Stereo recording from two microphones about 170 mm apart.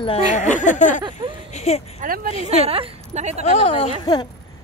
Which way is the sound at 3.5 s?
35° left (ahead or behind).